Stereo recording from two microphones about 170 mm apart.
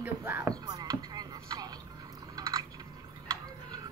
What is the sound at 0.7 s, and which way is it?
Chopping, 20° right (ahead or behind).